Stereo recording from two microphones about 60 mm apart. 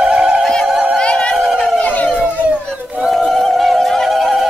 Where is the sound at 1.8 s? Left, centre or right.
Left.